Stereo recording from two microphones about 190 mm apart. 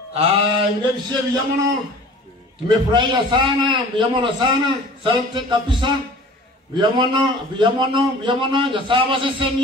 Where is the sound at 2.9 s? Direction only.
25° right (ahead or behind).